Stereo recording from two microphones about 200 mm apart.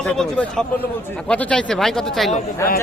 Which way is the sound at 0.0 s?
5° left (ahead or behind).